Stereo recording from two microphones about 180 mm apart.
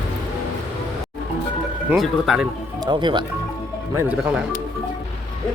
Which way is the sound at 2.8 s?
25° right (ahead or behind).